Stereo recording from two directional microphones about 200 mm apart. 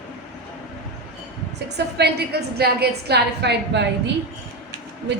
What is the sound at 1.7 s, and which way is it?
A woman's voice, 55° right (ahead or behind).